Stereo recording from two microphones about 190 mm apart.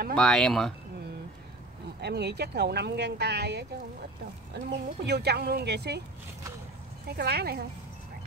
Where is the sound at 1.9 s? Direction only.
60° right (ahead or behind).